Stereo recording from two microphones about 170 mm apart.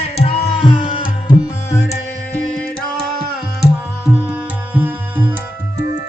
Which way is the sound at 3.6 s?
5° right (ahead or behind).